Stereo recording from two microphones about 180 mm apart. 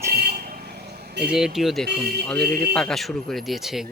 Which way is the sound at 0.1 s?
60° right (ahead or behind).